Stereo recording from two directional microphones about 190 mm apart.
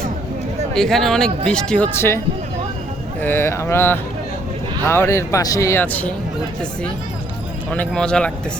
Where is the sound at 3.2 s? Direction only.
15° left (ahead or behind).